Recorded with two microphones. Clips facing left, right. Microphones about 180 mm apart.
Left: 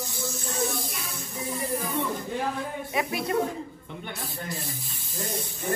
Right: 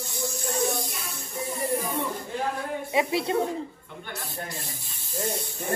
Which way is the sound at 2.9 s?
25° right (ahead or behind).